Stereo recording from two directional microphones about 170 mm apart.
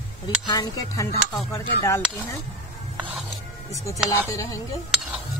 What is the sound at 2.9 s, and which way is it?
Music, 10° right (ahead or behind).